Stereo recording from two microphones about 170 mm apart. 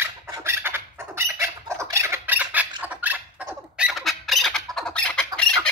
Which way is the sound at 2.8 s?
10° right (ahead or behind).